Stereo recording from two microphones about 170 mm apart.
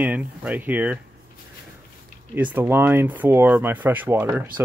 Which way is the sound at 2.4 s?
10° right (ahead or behind).